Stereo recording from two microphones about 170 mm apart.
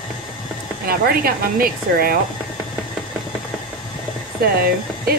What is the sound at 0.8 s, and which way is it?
Speech, 60° right (ahead or behind).